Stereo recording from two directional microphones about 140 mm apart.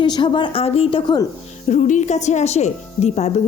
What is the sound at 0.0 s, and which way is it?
A woman's voice, 35° left (ahead or behind).